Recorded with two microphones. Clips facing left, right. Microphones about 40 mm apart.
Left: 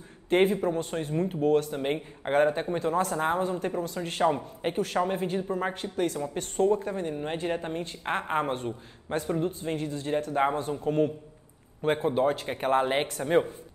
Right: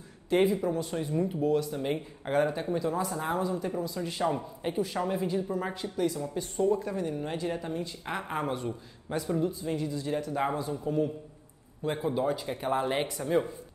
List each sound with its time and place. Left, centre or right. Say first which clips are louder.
0.3 s a woman's voice: left 2 dB; left
10.6 s speech: left 3 dB; left
12.8 s a woman's voice: left 2 dB; left